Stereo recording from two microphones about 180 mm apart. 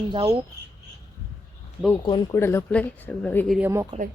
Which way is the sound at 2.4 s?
15° left (ahead or behind).